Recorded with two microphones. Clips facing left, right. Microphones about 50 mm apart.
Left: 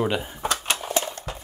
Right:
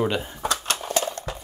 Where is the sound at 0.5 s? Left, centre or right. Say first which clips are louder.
Even; left.